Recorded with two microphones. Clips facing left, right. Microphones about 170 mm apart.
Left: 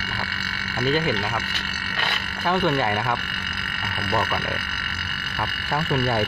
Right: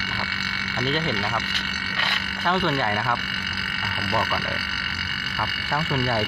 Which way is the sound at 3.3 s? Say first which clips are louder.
Right 1 dB; 50° left (ahead or behind).